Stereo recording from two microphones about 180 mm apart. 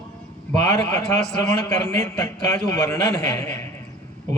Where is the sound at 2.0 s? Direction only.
20° left (ahead or behind).